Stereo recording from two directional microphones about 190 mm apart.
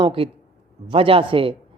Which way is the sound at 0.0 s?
30° right (ahead or behind).